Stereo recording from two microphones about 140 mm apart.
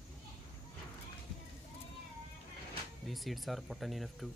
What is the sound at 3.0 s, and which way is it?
Speech, centre (ahead or behind).